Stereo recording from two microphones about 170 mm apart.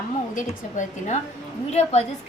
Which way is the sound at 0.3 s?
45° left (ahead or behind).